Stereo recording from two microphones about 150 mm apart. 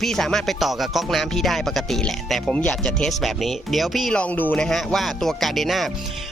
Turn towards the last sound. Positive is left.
turn(degrees=0)  # may be behind; listen again after turning